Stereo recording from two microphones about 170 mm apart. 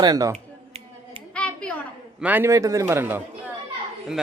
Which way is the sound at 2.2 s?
10° right (ahead or behind).